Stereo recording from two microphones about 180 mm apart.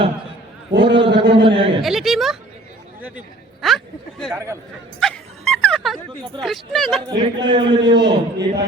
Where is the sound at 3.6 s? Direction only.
Centre (ahead or behind).